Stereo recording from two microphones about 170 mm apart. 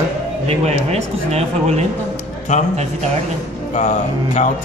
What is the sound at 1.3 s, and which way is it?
Speech, 40° right (ahead or behind).